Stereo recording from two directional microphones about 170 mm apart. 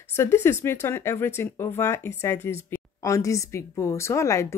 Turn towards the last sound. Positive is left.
turn(degrees=15)  # may be behind; listen again after turning